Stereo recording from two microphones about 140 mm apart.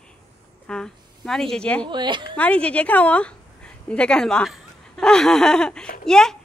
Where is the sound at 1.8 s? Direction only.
35° right (ahead or behind).